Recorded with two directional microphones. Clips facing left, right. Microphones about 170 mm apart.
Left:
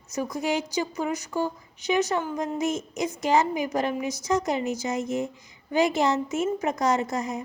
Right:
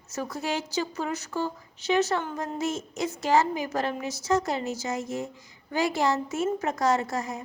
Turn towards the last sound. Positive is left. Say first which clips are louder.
# left 1 dB
turn(degrees=20)  # may be behind; listen again after turning